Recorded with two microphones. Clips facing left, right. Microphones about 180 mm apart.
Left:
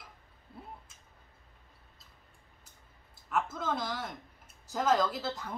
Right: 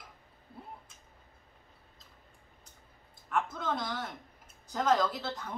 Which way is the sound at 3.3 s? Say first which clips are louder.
Even; 5° left (ahead or behind).